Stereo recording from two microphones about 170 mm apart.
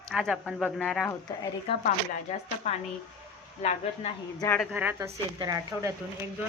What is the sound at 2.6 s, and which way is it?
Speech, 40° left (ahead or behind).